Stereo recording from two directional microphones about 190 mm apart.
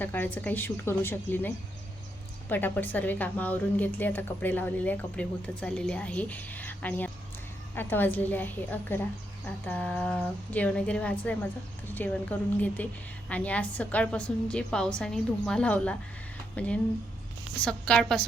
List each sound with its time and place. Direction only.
0.0 s a woman's voice: 10° left (ahead or behind)